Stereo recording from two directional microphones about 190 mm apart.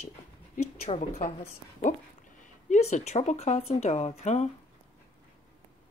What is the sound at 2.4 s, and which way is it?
Speech, 35° left (ahead or behind).